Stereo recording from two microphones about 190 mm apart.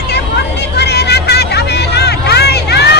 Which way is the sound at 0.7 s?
60° left (ahead or behind).